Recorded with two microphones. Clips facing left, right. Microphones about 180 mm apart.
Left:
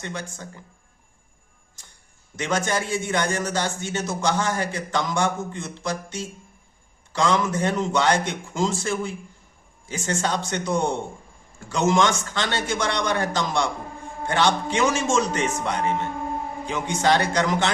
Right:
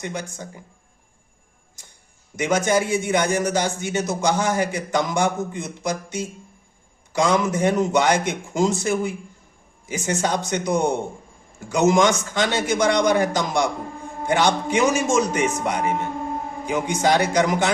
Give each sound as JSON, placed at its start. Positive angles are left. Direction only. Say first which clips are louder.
{"t": 0.0, "sound": "a man's voice", "louder": "right 3 dB", "side_deg": -15}
{"t": 2.4, "sound": "a man's voice", "louder": "right 5 dB", "side_deg": -15}